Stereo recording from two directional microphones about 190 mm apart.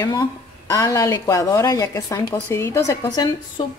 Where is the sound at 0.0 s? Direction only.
20° left (ahead or behind).